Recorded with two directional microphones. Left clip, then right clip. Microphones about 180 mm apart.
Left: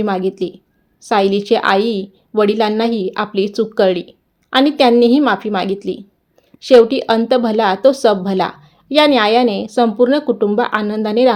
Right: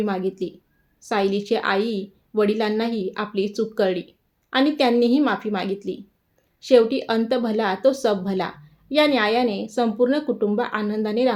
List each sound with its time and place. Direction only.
0.0 s speech: 45° left (ahead or behind)